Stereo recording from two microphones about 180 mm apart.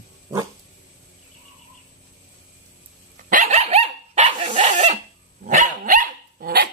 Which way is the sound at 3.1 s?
45° right (ahead or behind).